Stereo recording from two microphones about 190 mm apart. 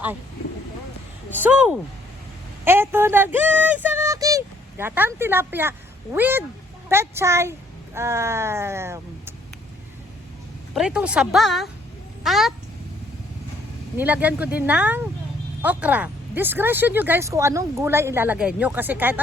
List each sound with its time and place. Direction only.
1.3 s speech: 10° right (ahead or behind)
10.8 s speech: 5° right (ahead or behind)
13.9 s speech: 10° right (ahead or behind)